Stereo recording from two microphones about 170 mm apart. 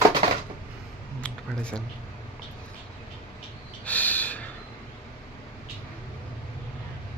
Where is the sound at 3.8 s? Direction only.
10° left (ahead or behind).